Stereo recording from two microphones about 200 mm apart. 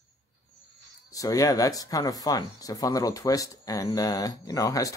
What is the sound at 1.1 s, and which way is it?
Speech, 15° left (ahead or behind).